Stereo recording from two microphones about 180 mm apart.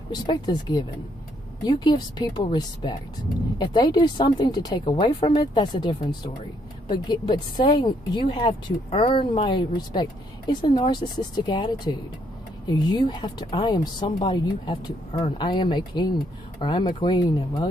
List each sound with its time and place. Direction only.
0.1 s speech: 20° left (ahead or behind)